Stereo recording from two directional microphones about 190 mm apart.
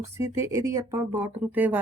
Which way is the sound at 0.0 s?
15° right (ahead or behind).